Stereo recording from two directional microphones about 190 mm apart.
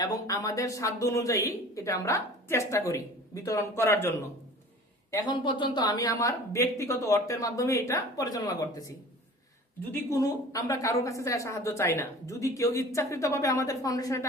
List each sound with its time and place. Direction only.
0.0 s a woman's voice: 20° left (ahead or behind)
5.1 s a woman's voice: 25° left (ahead or behind)
9.9 s a woman's voice: 15° left (ahead or behind)